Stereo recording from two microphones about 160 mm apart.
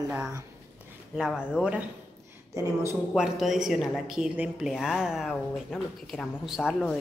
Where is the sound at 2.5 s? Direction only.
20° right (ahead or behind).